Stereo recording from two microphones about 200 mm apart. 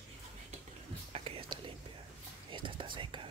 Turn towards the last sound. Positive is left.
turn(degrees=-25)  # may be behind; listen again after turning